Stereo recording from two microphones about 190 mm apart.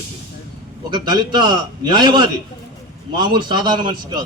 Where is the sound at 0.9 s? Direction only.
20° right (ahead or behind).